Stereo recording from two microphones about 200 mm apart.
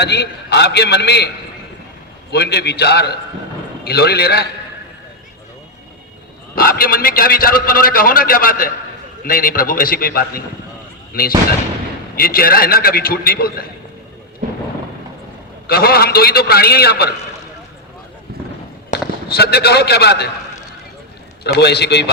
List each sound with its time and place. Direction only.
0.0 s a man's voice: 55° left (ahead or behind)
2.3 s a man's voice: 55° left (ahead or behind)
6.6 s a man's voice: 50° left (ahead or behind)
15.6 s a man's voice: 50° left (ahead or behind)
18.9 s a man's voice: 50° left (ahead or behind)
21.4 s a man's voice: 55° left (ahead or behind)